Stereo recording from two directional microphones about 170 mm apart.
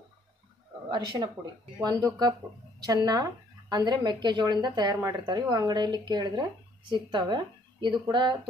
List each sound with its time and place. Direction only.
0.8 s speech: 25° right (ahead or behind)